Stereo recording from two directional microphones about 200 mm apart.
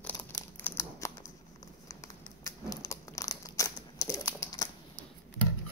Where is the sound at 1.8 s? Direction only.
15° left (ahead or behind).